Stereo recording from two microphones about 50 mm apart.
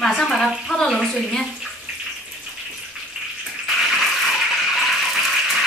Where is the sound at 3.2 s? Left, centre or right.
Centre.